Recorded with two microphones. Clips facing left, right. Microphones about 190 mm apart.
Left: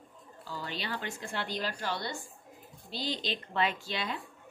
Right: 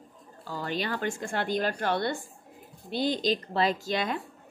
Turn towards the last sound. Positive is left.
turn(degrees=-45)  # may be behind; listen again after turning